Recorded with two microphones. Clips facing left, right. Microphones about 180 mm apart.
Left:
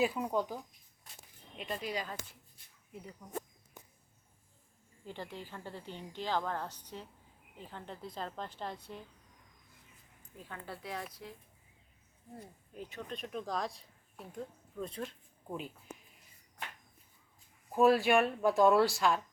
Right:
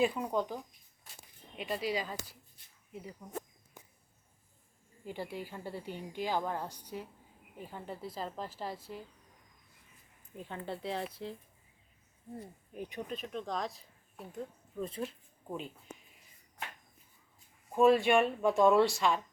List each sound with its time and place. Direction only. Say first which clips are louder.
0.0 s speech: right 1 dB; 5° left (ahead or behind)
1.5 s speech: right 4 dB; 5° right (ahead or behind)
2.2 s speech: right 2 dB; 35° right (ahead or behind)
2.9 s speech: right 3 dB; 5° right (ahead or behind)
5.0 s a woman's voice: right 4 dB; 10° right (ahead or behind)
10.3 s speech: right 5 dB; 20° right (ahead or behind)
12.7 s a woman's voice: right 4 dB; 15° right (ahead or behind)
13.1 s speech: left 3 dB; centre (ahead or behind)
17.7 s speech: right 1 dB; centre (ahead or behind)